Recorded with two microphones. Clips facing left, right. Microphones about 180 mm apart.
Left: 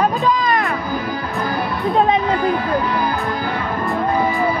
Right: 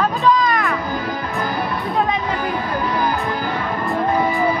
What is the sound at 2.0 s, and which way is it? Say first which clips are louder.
Speech: left 5 dB; 30° left (ahead or behind).